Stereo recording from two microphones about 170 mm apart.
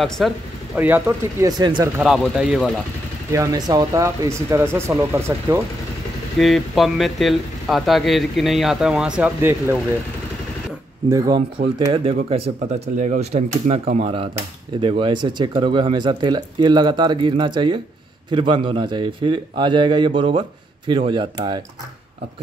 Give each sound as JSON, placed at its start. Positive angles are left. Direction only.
{"t": 0.2, "sound": "speech", "side_deg": 0}
{"t": 0.7, "sound": "speech", "side_deg": -10}
{"t": 1.6, "sound": "a man's voice", "side_deg": -25}
{"t": 2.0, "sound": "speech", "side_deg": -5}
{"t": 3.3, "sound": "speech", "side_deg": -20}
{"t": 6.3, "sound": "speech", "side_deg": 0}
{"t": 11.1, "sound": "a man's voice", "side_deg": -20}
{"t": 11.9, "sound": "a man's voice", "side_deg": -35}